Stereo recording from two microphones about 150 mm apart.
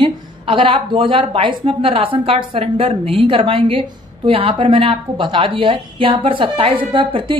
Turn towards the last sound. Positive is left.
turn(degrees=-35)  # may be behind; listen again after turning